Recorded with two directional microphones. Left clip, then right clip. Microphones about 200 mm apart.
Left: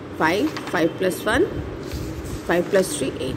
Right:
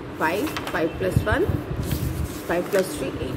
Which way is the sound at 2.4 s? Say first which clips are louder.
Left 3 dB; 35° left (ahead or behind).